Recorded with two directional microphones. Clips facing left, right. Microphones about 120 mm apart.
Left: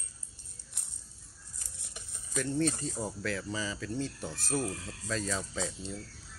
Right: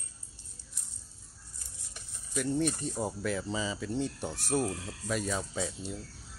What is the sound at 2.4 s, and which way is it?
Speech, 15° right (ahead or behind).